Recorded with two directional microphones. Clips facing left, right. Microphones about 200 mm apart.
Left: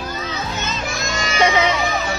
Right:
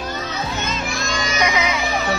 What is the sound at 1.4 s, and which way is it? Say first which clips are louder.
Music: left 5 dB; 30° left (ahead or behind).